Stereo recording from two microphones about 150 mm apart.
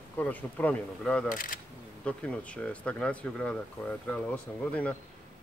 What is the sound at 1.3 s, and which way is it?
Speech, 65° left (ahead or behind).